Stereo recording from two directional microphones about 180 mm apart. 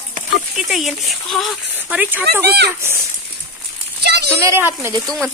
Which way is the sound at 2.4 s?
65° right (ahead or behind).